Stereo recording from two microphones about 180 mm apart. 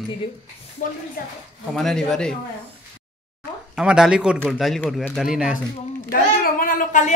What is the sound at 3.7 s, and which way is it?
A man's voice, 5° right (ahead or behind).